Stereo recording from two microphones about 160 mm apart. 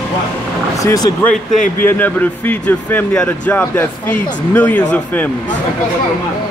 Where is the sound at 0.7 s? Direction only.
20° left (ahead or behind).